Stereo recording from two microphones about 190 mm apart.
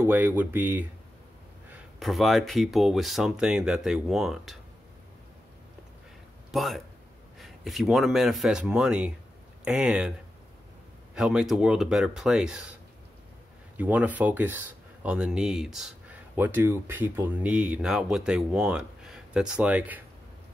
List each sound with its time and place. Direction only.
0.0 s speech: 10° right (ahead or behind)
6.5 s speech: centre (ahead or behind)
11.1 s speech: 5° right (ahead or behind)
13.7 s speech: 10° right (ahead or behind)